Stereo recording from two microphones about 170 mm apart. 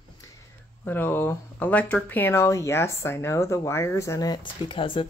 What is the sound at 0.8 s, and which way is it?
Speech, 10° left (ahead or behind).